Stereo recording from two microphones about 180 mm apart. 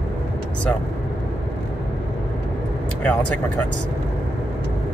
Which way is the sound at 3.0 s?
5° left (ahead or behind).